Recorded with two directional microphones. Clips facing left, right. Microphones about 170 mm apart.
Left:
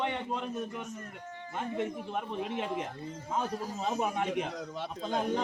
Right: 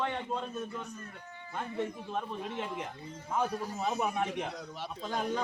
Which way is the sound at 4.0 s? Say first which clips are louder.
Left 1 dB; 20° left (ahead or behind).